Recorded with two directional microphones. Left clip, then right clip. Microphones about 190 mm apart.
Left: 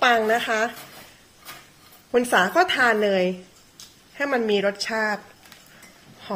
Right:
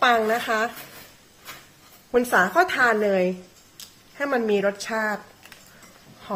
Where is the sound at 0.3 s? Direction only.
15° left (ahead or behind).